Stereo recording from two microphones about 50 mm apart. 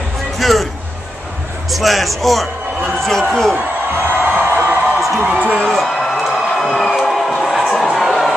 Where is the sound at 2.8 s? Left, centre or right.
Centre.